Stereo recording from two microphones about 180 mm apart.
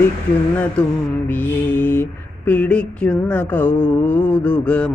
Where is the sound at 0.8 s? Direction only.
5° left (ahead or behind).